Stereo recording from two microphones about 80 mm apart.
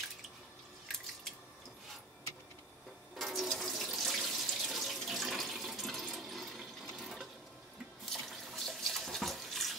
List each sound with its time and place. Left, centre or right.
3.2 s water: centre
8.0 s water tap: centre